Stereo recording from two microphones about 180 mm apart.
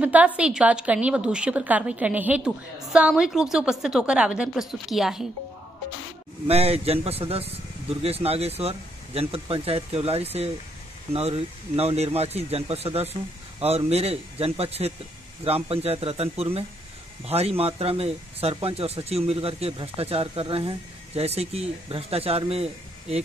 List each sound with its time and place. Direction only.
0.0 s a woman's voice: 5° right (ahead or behind)
6.4 s speech: 35° right (ahead or behind)